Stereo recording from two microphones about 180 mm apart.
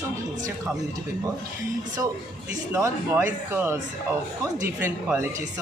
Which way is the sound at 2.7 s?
10° right (ahead or behind).